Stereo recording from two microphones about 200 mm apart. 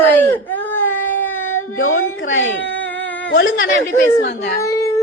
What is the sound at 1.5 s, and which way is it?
Speech, 90° left.